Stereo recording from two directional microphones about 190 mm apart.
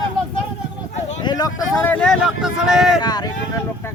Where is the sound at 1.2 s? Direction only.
20° left (ahead or behind); by 3.0 s centre (ahead or behind).